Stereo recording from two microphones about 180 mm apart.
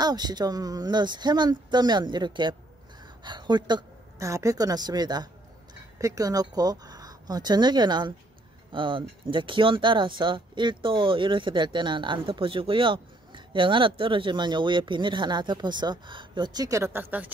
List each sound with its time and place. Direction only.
0.0 s a woman's voice: 20° right (ahead or behind)